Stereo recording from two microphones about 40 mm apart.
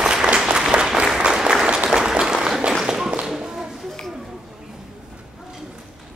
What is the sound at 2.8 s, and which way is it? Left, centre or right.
Tap, centre.